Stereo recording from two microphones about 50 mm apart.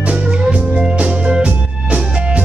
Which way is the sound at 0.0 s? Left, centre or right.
Right.